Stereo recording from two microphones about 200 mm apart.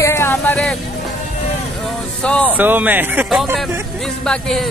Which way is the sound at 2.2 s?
5° left (ahead or behind).